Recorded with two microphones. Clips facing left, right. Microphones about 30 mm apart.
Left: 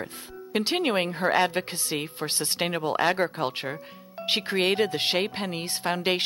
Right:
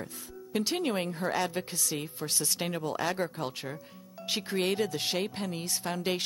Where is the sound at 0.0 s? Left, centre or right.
Left.